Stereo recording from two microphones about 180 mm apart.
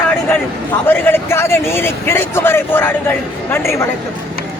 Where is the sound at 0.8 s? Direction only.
10° left (ahead or behind).